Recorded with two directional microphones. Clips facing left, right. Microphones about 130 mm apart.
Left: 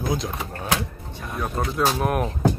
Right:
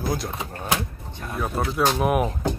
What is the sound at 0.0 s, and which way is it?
Speech, centre (ahead or behind).